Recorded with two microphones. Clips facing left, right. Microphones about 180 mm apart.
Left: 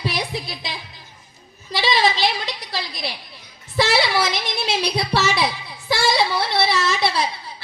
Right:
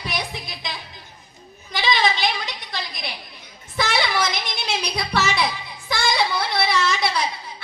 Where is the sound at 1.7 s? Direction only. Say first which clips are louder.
Left 2 dB; 35° left (ahead or behind).